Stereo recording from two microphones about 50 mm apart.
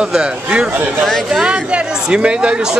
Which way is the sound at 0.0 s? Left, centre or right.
Centre.